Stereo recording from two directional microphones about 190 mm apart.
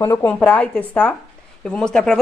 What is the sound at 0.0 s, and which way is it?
A woman's voice, 10° left (ahead or behind).